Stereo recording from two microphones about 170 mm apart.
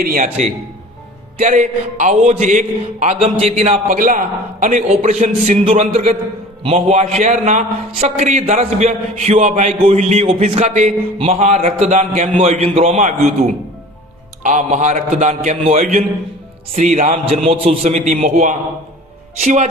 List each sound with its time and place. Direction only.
0.0 s a man's voice: 55° right (ahead or behind)
1.4 s a man's voice: 45° right (ahead or behind)
3.8 s a man's voice: 55° right (ahead or behind)
14.4 s a man's voice: 45° right (ahead or behind)